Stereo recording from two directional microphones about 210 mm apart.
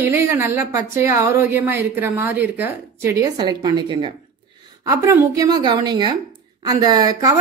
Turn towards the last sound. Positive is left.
turn(degrees=-15)  # may be behind; listen again after turning